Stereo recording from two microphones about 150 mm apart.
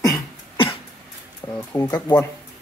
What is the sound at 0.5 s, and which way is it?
Cough, 35° left (ahead or behind).